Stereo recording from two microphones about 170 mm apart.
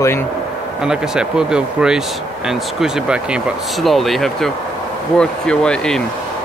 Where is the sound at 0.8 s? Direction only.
5° right (ahead or behind).